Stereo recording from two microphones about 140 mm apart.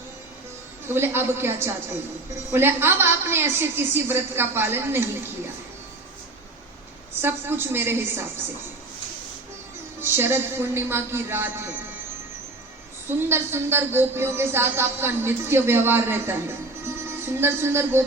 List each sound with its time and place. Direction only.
0.9 s speech: 15° right (ahead or behind)
7.1 s speech: 15° right (ahead or behind)
10.0 s speech: 15° right (ahead or behind)
13.1 s speech: 15° right (ahead or behind)